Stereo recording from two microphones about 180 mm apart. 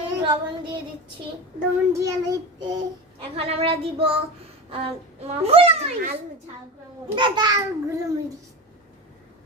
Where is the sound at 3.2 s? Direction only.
30° right (ahead or behind).